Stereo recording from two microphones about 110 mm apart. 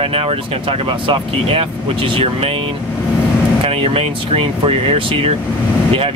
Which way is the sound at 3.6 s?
60° right (ahead or behind).